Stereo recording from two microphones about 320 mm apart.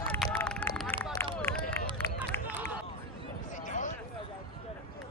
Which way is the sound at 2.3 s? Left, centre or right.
Centre.